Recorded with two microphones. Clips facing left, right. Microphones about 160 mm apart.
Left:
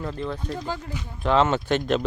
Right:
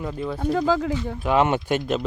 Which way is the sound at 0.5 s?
90° right.